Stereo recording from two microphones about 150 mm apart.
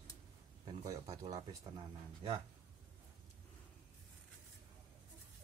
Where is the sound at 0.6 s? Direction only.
20° right (ahead or behind).